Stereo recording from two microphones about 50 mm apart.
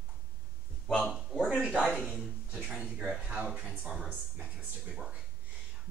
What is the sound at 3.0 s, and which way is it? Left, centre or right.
Speech, centre.